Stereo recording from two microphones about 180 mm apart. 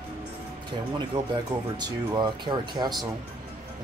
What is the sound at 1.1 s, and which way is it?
Speech, 25° right (ahead or behind).